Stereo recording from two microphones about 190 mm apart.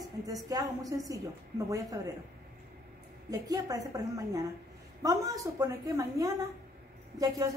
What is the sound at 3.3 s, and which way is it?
A woman's voice, 20° right (ahead or behind).